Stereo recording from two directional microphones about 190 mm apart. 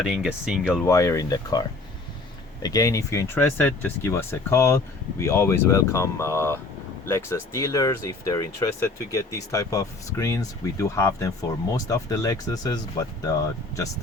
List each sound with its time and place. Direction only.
0.0 s speech: 5° right (ahead or behind)
0.9 s speech: 15° left (ahead or behind)